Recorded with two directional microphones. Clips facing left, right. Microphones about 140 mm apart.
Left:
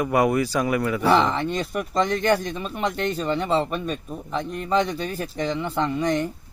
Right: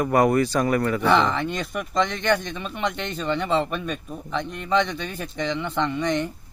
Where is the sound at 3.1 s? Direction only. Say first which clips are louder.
Left 2 dB; 40° left (ahead or behind).